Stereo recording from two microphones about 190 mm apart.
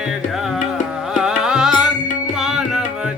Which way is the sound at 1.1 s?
5° right (ahead or behind).